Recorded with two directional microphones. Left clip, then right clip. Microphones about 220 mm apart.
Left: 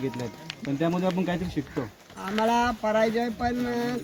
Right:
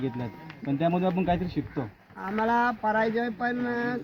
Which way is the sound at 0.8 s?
40° right (ahead or behind).